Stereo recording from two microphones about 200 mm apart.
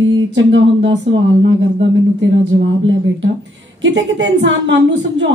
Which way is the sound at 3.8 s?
65° right (ahead or behind).